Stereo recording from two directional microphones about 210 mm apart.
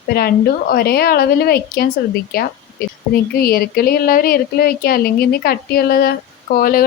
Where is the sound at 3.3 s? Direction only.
45° left (ahead or behind).